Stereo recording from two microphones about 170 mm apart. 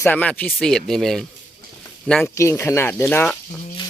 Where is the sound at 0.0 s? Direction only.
10° left (ahead or behind).